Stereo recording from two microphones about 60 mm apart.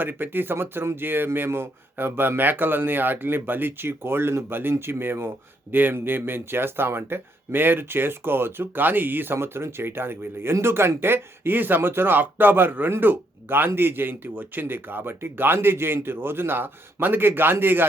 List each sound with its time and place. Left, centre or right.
0.0 s speech: right